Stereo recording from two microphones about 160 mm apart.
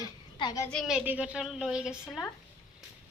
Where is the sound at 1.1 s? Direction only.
10° right (ahead or behind).